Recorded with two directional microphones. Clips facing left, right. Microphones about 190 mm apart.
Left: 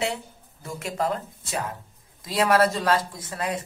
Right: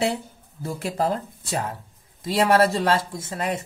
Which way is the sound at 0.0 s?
35° right (ahead or behind).